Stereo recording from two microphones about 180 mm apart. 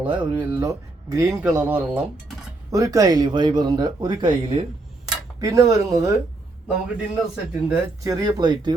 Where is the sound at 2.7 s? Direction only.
20° right (ahead or behind).